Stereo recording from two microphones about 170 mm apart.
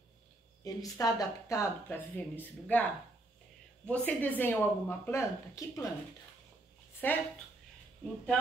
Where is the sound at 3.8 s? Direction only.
10° left (ahead or behind).